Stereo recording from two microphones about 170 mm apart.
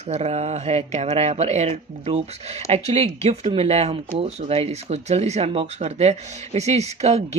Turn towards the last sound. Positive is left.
turn(degrees=-40)  # may be behind; listen again after turning